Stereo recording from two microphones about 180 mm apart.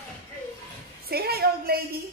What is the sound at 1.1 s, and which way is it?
Speech, 60° right (ahead or behind).